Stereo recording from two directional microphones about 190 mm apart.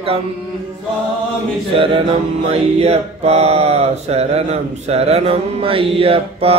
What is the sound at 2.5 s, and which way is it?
Mantra, 35° right (ahead or behind).